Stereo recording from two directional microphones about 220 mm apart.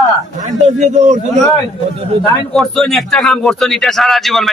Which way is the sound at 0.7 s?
35° right (ahead or behind).